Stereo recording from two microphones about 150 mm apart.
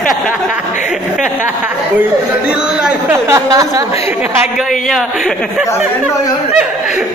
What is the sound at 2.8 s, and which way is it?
Speech, 5° right (ahead or behind).